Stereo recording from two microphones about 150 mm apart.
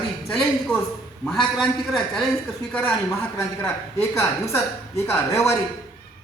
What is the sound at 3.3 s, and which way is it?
A woman's voice, 15° left (ahead or behind).